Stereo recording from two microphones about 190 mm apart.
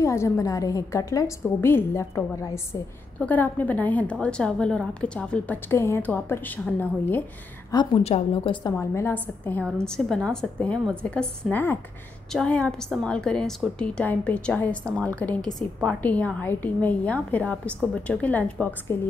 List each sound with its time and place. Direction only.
0.0 s a woman's voice: 15° left (ahead or behind)
7.7 s a woman's voice: 25° left (ahead or behind)
8.0 s a woman's voice: 35° left (ahead or behind)
8.7 s a woman's voice: 10° left (ahead or behind)